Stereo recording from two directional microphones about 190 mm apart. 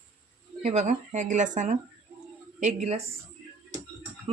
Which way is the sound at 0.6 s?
35° right (ahead or behind).